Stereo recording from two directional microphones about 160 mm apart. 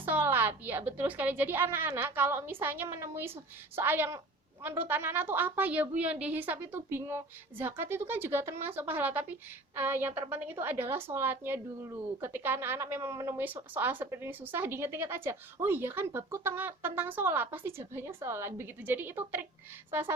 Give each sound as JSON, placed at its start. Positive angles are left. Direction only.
{"t": 0.0, "sound": "a woman's voice", "side_deg": -10}